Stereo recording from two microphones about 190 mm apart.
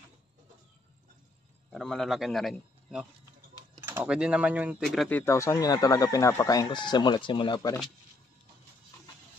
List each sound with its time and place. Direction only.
1.7 s a man's voice: centre (ahead or behind)
5.2 s speech: 15° left (ahead or behind)